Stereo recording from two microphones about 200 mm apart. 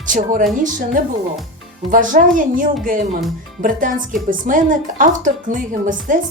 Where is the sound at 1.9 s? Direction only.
40° right (ahead or behind).